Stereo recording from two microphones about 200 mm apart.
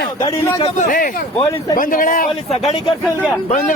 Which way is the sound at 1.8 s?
40° left (ahead or behind).